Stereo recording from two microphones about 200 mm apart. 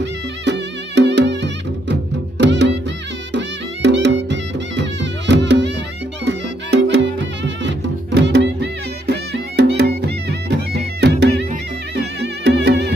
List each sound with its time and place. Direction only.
0.0 s music: 60° right (ahead or behind)